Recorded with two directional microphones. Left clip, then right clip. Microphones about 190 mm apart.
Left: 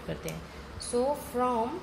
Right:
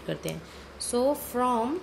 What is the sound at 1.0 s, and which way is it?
Speech, 55° right (ahead or behind).